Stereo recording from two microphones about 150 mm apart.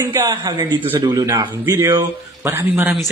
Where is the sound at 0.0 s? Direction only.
20° right (ahead or behind).